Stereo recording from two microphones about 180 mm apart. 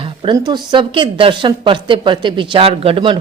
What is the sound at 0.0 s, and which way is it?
Speech, 30° right (ahead or behind).